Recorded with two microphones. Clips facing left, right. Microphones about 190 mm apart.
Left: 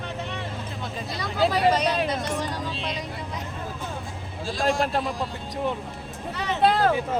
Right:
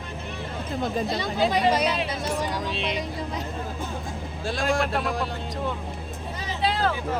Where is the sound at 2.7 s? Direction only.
65° right (ahead or behind).